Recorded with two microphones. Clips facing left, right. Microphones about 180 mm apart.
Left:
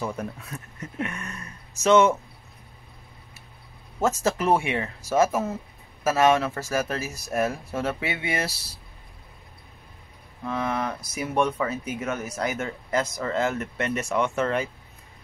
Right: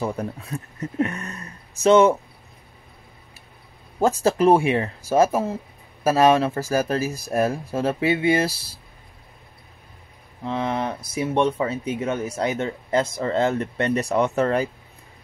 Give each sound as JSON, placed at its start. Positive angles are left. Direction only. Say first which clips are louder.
{"t": 0.0, "sound": "speech", "louder": "right 4 dB", "side_deg": -35}
{"t": 4.2, "sound": "speech", "louder": "right 8 dB", "side_deg": -30}
{"t": 10.4, "sound": "speech", "louder": "right 3 dB", "side_deg": -25}